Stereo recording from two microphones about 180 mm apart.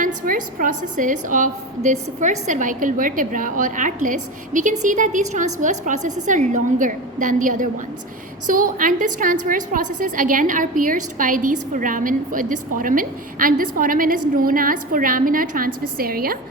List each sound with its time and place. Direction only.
0.0 s a woman's voice: 50° right (ahead or behind)